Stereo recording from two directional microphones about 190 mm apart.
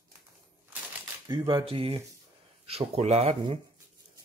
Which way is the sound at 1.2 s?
25° right (ahead or behind).